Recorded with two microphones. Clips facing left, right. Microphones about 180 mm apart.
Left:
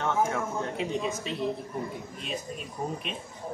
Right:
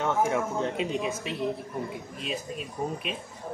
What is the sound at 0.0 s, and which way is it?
Speech, 20° right (ahead or behind).